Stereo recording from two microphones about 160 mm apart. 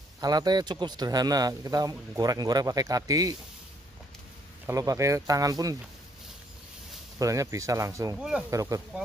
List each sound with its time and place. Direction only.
0.2 s speech: 25° right (ahead or behind)
4.6 s speech: 20° right (ahead or behind)
7.2 s speech: 20° right (ahead or behind)
8.2 s speech: 5° right (ahead or behind)
8.5 s speech: 20° right (ahead or behind)